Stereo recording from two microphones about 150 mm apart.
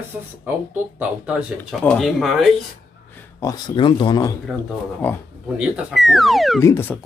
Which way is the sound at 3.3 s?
25° left (ahead or behind).